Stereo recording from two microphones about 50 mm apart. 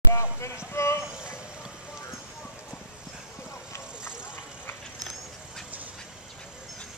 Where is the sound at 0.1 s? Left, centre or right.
Left.